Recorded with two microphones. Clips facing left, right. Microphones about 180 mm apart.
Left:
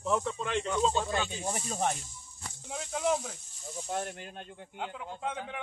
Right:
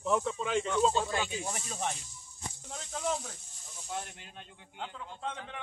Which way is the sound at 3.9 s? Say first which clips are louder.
Left 4 dB; 50° left (ahead or behind).